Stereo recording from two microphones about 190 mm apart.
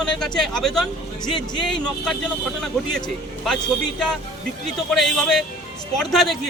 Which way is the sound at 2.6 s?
Centre (ahead or behind).